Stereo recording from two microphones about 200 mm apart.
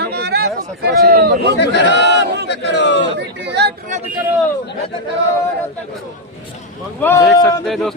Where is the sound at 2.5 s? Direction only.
60° left (ahead or behind).